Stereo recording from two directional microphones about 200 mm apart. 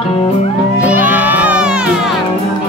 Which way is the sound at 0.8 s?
5° right (ahead or behind).